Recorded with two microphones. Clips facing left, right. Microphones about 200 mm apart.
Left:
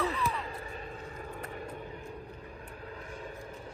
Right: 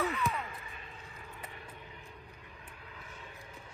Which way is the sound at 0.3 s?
30° left (ahead or behind).